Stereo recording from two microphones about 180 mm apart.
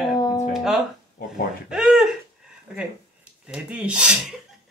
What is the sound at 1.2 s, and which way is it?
Speech, 60° left (ahead or behind).